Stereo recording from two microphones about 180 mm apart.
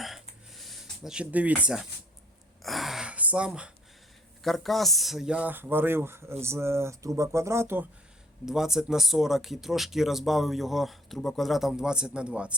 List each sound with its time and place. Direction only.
0.5 s speech: centre (ahead or behind)
2.6 s gasp: centre (ahead or behind)
4.4 s speech: centre (ahead or behind)